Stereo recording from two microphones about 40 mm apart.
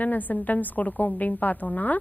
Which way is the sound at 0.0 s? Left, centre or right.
Left.